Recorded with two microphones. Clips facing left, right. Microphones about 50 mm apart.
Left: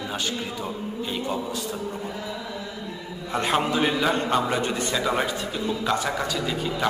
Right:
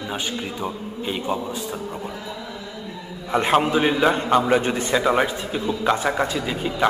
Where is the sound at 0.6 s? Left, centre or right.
Centre.